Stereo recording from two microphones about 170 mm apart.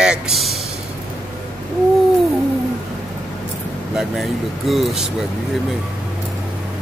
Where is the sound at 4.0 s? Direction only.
Centre (ahead or behind).